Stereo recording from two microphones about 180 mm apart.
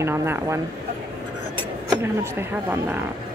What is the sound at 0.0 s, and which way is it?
Speech, 15° right (ahead or behind).